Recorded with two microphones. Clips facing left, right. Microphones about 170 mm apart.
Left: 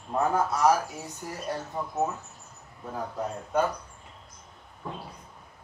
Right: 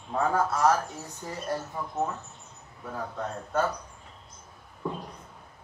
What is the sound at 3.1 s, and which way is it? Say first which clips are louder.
Speech: left 2 dB; 10° left (ahead or behind).